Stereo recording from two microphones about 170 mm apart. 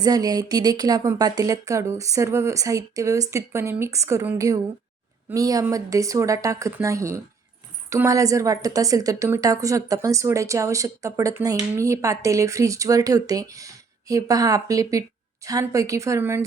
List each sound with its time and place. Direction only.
0.0 s a woman's voice: 20° right (ahead or behind)